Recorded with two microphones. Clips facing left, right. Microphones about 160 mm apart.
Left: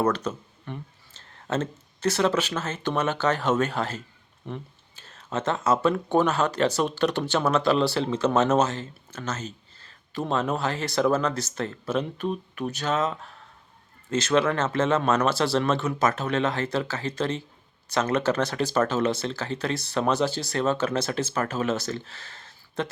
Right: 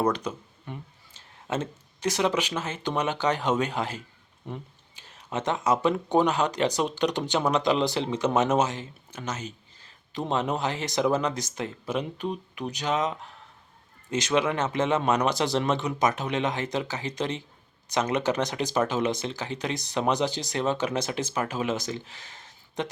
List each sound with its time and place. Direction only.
0.0 s speech: 15° right (ahead or behind)